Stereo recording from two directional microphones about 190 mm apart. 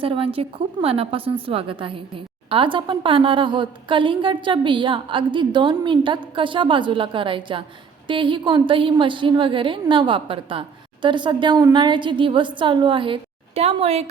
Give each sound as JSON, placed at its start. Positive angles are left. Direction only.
{"t": 0.0, "sound": "a woman's voice", "side_deg": -30}